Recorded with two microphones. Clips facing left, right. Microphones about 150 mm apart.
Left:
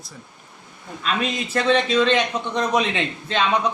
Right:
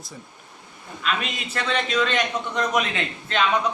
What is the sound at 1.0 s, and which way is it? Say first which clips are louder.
Speech: left 3 dB; 35° left (ahead or behind).